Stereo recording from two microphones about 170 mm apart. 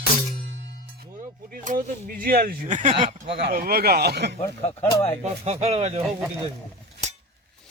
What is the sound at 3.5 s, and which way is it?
Speech, 65° right (ahead or behind).